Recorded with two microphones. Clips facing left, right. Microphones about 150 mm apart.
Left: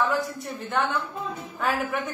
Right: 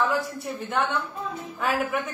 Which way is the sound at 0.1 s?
Centre (ahead or behind).